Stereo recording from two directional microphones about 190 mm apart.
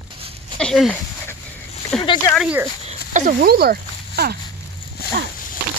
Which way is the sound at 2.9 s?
40° right (ahead or behind).